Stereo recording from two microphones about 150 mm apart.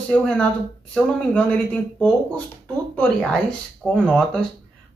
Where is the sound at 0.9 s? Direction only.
10° left (ahead or behind).